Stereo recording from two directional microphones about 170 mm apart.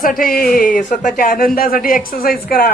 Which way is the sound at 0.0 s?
55° left (ahead or behind).